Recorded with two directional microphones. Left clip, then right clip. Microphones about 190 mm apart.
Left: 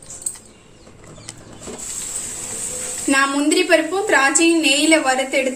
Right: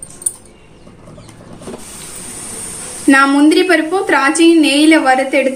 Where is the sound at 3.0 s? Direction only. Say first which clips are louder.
Right 8 dB; 30° right (ahead or behind).